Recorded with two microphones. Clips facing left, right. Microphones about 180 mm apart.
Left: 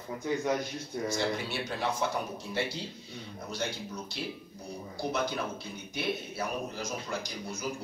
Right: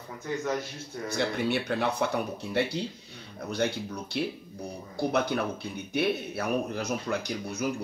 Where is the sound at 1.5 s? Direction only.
60° right (ahead or behind).